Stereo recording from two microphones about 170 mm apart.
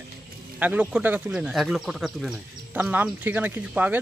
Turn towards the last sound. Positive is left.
turn(degrees=-10)  # may be behind; listen again after turning